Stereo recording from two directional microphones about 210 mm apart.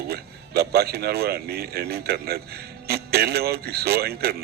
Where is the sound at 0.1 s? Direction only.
50° right (ahead or behind).